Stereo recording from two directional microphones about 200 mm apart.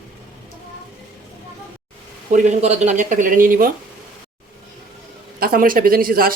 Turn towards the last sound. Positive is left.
turn(degrees=-45)  # may be behind; listen again after turning